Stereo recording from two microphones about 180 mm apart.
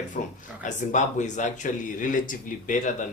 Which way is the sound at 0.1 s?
50° left (ahead or behind).